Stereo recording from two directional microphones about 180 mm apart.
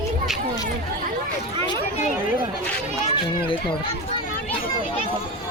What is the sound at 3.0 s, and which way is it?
Speech, 35° left (ahead or behind).